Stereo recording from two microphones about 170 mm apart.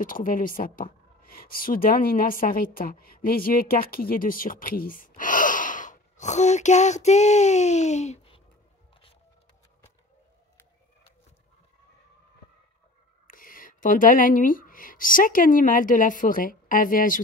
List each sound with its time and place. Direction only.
0.0 s speech: 55° left (ahead or behind); by 8.4 s 40° left (ahead or behind)
13.3 s speech: 55° left (ahead or behind)